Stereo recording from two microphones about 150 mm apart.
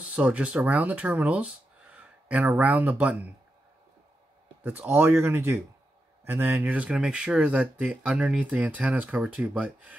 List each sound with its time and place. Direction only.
0.0 s speech: 5° right (ahead or behind)
4.6 s speech: 10° right (ahead or behind)